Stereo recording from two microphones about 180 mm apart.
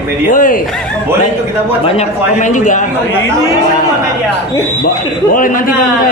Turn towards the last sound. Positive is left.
turn(degrees=50)  # may be behind; listen again after turning